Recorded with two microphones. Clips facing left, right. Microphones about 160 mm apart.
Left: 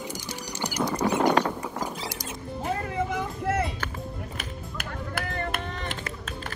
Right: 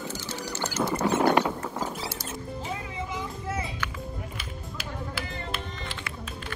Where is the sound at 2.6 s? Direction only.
55° left (ahead or behind).